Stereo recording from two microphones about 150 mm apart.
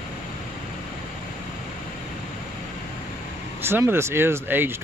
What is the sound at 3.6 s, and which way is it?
Speech, 15° right (ahead or behind).